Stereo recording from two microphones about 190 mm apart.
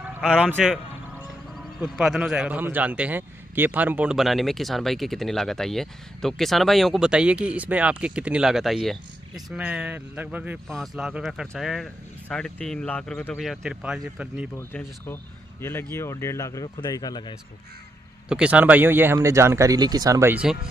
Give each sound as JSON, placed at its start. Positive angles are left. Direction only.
{"t": 0.2, "sound": "a man's voice", "side_deg": 0}
{"t": 14.5, "sound": "speech", "side_deg": 10}
{"t": 18.3, "sound": "speech", "side_deg": -5}